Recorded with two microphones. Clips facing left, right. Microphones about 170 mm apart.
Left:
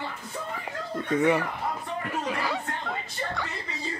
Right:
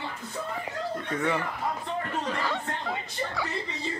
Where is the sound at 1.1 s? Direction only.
20° left (ahead or behind).